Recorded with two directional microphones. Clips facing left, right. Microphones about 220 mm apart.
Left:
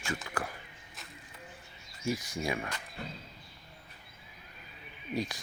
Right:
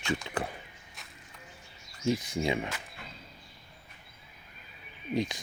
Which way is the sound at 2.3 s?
25° right (ahead or behind).